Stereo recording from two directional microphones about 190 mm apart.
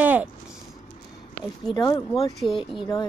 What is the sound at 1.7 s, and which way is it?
Speech, 20° left (ahead or behind).